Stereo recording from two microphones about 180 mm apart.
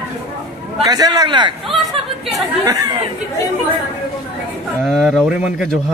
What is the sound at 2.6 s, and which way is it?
Speech, 20° right (ahead or behind).